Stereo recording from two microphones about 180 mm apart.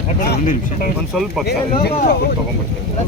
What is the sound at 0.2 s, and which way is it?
Speech, 50° left (ahead or behind).